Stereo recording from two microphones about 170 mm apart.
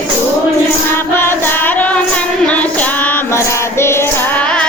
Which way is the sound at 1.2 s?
10° left (ahead or behind).